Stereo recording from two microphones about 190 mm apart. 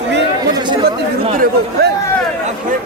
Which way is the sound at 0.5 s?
25° right (ahead or behind).